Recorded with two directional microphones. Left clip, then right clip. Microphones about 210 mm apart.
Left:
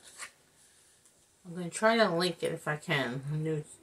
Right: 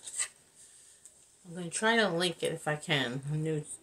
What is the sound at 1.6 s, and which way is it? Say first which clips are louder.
Speech: left 2 dB; 5° right (ahead or behind).